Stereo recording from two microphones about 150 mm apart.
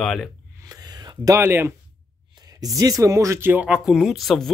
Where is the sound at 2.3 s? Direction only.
25° right (ahead or behind); by 4.5 s centre (ahead or behind).